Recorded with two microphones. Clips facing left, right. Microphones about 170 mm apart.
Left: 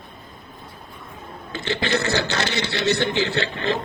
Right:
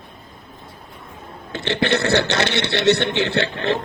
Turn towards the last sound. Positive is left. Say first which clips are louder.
# right 3 dB
turn(degrees=-65)  # may be behind; listen again after turning